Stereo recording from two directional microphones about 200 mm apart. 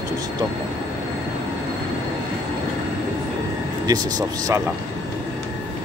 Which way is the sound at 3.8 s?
20° right (ahead or behind).